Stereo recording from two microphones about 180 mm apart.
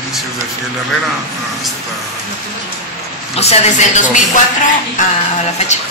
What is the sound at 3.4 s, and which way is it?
A woman's voice, 40° left (ahead or behind).